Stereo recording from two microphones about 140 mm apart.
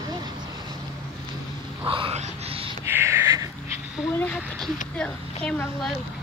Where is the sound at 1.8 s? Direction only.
40° right (ahead or behind).